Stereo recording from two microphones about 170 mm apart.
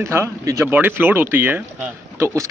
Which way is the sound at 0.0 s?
15° right (ahead or behind).